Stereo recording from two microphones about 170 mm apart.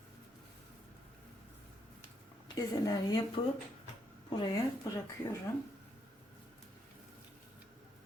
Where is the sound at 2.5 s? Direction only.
20° left (ahead or behind).